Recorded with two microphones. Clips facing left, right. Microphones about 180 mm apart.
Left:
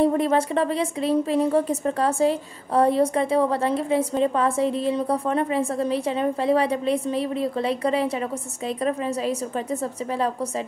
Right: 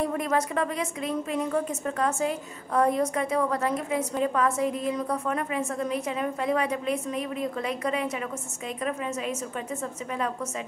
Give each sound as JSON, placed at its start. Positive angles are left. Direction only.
{"t": 0.0, "sound": "a woman's voice", "side_deg": 30}